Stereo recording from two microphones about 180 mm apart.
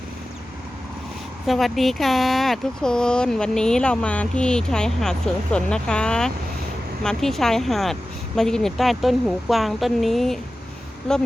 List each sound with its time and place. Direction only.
1.5 s speech: centre (ahead or behind)